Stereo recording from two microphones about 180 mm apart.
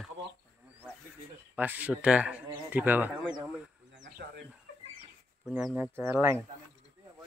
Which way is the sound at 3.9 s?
70° right (ahead or behind).